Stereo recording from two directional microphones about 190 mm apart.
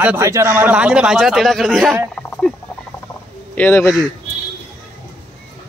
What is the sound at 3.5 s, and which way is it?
Speech, 10° left (ahead or behind).